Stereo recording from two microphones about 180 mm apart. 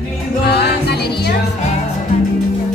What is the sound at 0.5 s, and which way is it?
Music, 65° left (ahead or behind).